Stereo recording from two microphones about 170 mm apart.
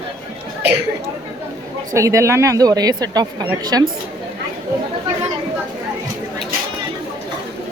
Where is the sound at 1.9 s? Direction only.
20° right (ahead or behind).